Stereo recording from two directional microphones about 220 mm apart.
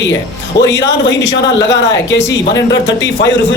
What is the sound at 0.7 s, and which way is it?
Speech, 55° left (ahead or behind).